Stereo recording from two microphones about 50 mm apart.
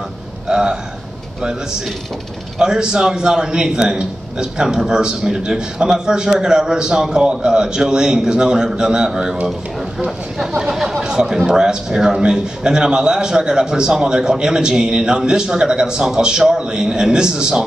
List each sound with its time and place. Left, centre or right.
0.5 s a man's voice: centre
2.6 s a man's voice: centre
10.7 s a man's voice: centre